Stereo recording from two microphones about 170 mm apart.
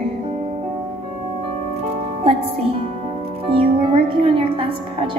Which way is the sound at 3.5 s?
30° right (ahead or behind).